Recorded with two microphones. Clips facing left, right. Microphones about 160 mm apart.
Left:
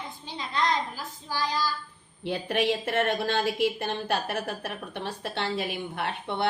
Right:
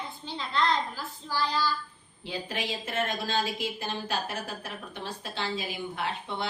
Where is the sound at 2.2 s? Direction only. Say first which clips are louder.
Left 8 dB; 65° left (ahead or behind).